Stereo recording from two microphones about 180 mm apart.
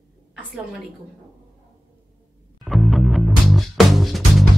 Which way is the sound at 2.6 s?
Centre (ahead or behind).